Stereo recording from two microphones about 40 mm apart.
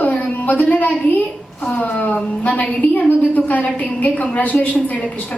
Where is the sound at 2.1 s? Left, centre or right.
Left.